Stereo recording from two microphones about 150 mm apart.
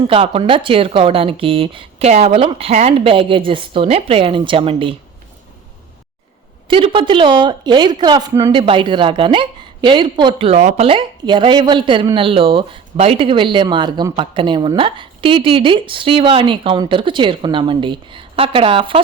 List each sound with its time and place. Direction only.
0.0 s a woman's voice: 35° right (ahead or behind)
6.7 s a woman's voice: 35° right (ahead or behind)
10.6 s speech: 50° right (ahead or behind)
10.8 s a woman's voice: 35° right (ahead or behind)